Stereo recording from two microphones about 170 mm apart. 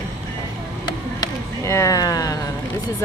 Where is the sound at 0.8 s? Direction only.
20° left (ahead or behind).